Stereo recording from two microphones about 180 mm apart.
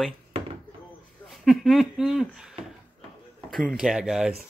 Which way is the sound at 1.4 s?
Centre (ahead or behind).